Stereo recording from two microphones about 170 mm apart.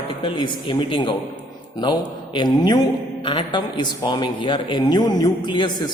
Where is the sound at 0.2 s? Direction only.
30° left (ahead or behind).